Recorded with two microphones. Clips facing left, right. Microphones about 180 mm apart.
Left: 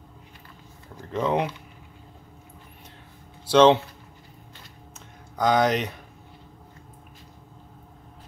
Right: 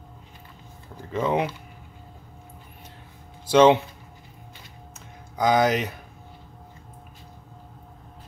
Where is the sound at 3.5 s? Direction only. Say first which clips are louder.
Even; 10° right (ahead or behind).